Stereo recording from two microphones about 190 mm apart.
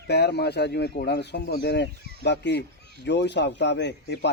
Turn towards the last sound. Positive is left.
turn(degrees=65)  # may be behind; listen again after turning